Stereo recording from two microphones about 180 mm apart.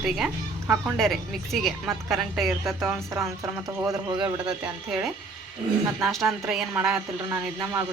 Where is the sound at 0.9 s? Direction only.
Centre (ahead or behind).